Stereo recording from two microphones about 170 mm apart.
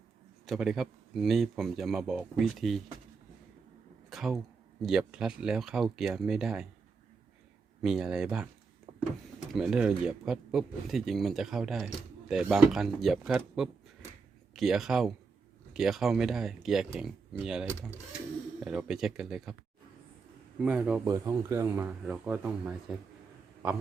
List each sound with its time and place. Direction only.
0.4 s speech: centre (ahead or behind)
4.1 s a sound: centre (ahead or behind)
4.8 s speech: 5° right (ahead or behind)
7.8 s speech: centre (ahead or behind)
8.9 s power windows: 30° right (ahead or behind)
9.5 s speech: 5° right (ahead or behind)
20.6 s speech: 5° right (ahead or behind)
21.0 s speech: 15° right (ahead or behind)